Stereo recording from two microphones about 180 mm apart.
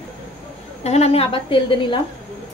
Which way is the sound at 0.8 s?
35° left (ahead or behind).